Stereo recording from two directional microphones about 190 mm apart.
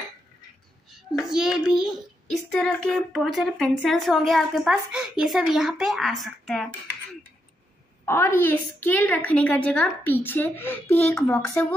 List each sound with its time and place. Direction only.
1.1 s a child's voice: centre (ahead or behind)
8.0 s a woman's voice: 15° left (ahead or behind)